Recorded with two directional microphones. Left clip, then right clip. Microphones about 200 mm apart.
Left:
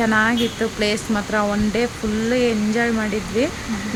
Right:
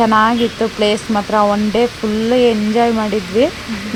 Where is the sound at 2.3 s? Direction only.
15° right (ahead or behind).